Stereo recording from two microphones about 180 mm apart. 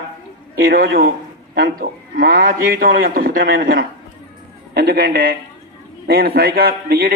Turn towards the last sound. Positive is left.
turn(degrees=-60)  # may be behind; listen again after turning